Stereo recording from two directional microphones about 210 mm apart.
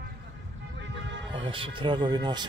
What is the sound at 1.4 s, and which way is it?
Speech, 25° right (ahead or behind).